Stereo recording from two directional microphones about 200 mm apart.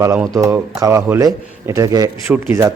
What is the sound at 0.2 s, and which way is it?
A man's voice, 10° right (ahead or behind).